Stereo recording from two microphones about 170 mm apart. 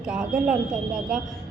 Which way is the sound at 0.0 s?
5° right (ahead or behind).